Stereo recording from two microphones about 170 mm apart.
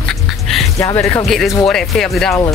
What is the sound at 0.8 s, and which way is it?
Speech, 20° left (ahead or behind).